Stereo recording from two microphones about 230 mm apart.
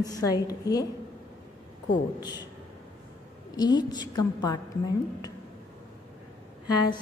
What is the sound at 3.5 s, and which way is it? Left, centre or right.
A woman's voice, centre.